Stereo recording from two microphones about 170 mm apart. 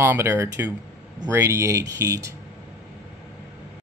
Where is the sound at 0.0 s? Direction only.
15° right (ahead or behind).